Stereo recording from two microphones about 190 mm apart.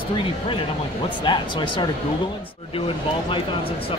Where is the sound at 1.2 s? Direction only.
25° left (ahead or behind).